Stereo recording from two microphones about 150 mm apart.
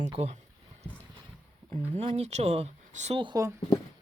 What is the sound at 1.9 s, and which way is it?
Speech, 45° right (ahead or behind).